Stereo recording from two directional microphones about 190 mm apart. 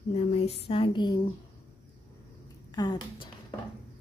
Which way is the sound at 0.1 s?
30° left (ahead or behind).